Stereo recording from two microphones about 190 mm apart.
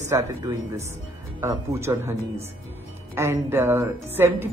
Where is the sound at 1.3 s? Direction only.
15° right (ahead or behind).